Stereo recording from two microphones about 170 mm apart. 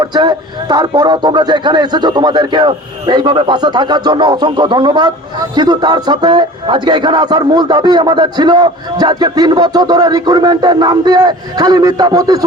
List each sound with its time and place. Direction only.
0.0 s a man's voice: 25° right (ahead or behind)